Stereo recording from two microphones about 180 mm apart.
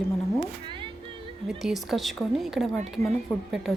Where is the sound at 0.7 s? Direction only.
30° right (ahead or behind).